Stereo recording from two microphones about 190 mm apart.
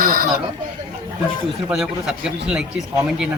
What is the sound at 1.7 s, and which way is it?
Speech, centre (ahead or behind).